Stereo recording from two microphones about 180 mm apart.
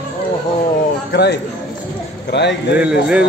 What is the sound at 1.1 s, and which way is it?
A man's voice, 70° left (ahead or behind).